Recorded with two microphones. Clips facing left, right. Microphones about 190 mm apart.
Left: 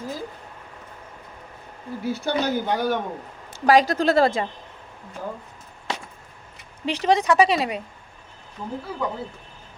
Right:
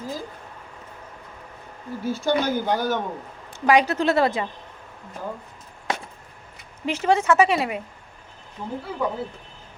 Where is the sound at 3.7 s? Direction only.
35° left (ahead or behind).